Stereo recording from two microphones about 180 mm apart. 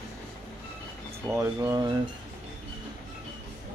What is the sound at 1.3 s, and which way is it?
Speech, 15° right (ahead or behind).